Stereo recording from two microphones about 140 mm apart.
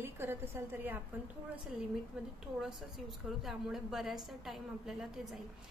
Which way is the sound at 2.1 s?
5° right (ahead or behind).